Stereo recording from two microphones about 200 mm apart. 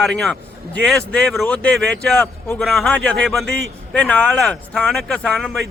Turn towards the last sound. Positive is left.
turn(degrees=0)  # may be behind; listen again after turning